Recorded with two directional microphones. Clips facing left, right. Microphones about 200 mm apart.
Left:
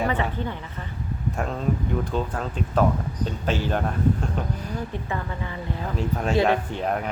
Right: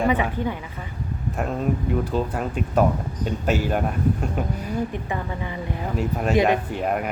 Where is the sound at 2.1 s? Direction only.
10° right (ahead or behind).